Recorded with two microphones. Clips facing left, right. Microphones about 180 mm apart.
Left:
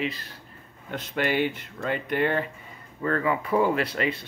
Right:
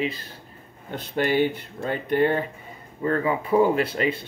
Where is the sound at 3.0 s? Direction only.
30° right (ahead or behind).